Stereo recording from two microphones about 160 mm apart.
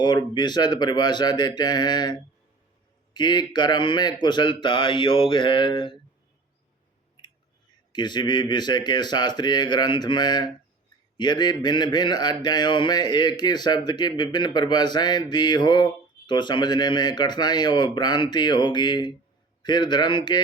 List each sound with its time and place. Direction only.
0.0 s speech: 25° left (ahead or behind)
7.9 s speech: 30° left (ahead or behind)